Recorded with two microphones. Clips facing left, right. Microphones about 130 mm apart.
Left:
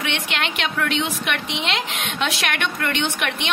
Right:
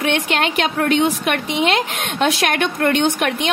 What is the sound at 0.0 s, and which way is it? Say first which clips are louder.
A woman's voice: right 7 dB; 45° right (ahead or behind).